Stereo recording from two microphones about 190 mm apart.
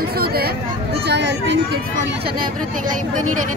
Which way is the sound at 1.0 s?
65° right (ahead or behind).